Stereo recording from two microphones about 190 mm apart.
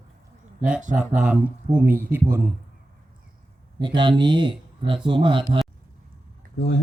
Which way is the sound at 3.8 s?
25° right (ahead or behind).